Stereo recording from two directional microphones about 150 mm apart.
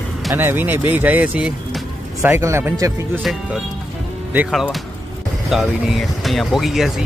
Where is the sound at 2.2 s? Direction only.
20° right (ahead or behind).